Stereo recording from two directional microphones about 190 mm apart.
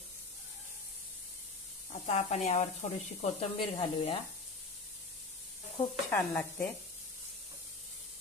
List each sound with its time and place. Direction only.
1.9 s speech: 35° left (ahead or behind)
6.0 s speech: 10° left (ahead or behind)